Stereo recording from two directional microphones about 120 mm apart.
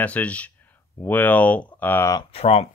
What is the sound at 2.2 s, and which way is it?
Speech, 55° left (ahead or behind).